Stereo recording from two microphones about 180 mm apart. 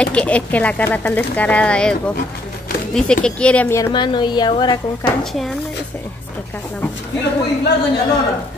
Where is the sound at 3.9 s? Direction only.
25° left (ahead or behind).